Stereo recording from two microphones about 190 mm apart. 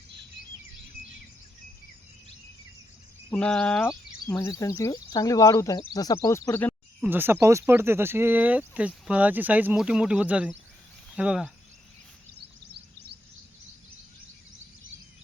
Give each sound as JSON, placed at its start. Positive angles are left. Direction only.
{"t": 3.3, "sound": "speech", "side_deg": 5}
{"t": 7.0, "sound": "speech", "side_deg": -10}